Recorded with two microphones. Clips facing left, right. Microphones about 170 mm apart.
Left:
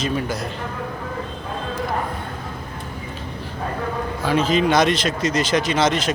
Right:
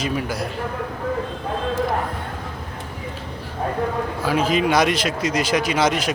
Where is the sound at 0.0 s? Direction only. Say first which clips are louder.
Left 1 dB; 10° right (ahead or behind).